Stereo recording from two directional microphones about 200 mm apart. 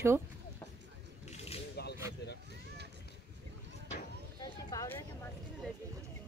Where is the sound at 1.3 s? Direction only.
30° left (ahead or behind).